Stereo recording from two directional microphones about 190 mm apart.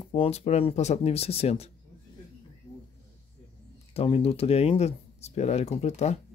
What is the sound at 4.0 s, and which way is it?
Speech, 30° left (ahead or behind).